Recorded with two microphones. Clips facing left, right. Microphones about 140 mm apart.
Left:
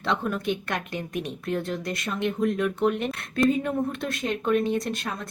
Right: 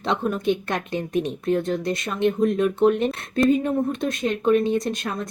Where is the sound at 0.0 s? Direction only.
20° right (ahead or behind).